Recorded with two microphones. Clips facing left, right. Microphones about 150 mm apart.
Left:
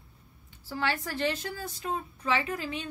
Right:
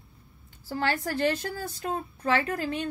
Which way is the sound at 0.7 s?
45° right (ahead or behind).